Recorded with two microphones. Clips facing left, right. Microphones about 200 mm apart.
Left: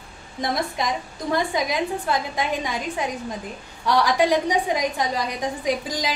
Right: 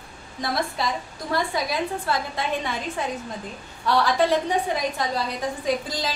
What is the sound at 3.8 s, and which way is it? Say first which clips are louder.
A woman's voice: left 1 dB; 15° left (ahead or behind).